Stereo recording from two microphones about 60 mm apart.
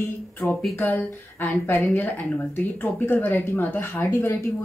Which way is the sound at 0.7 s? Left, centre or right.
Left.